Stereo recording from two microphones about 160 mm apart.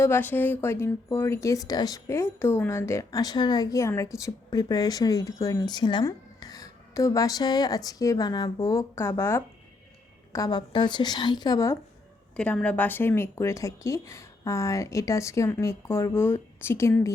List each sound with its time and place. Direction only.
0.0 s speech: 15° left (ahead or behind)
12.4 s speech: 5° left (ahead or behind)